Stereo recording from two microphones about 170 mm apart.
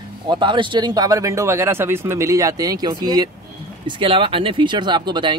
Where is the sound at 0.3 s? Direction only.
30° right (ahead or behind).